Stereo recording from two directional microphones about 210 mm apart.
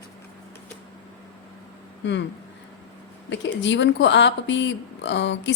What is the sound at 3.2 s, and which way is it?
A woman's voice, 60° left (ahead or behind).